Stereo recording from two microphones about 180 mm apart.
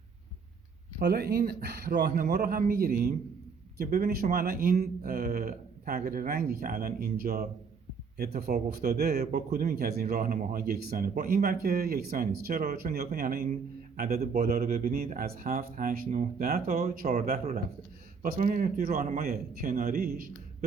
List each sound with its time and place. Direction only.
0.9 s a man's voice: 60° right (ahead or behind)